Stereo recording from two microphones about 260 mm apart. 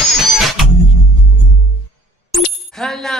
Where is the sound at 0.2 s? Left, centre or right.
Centre.